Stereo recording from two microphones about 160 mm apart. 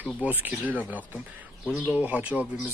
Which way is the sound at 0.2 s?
10° right (ahead or behind).